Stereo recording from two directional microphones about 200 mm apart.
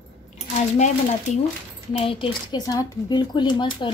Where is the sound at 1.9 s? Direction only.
30° left (ahead or behind).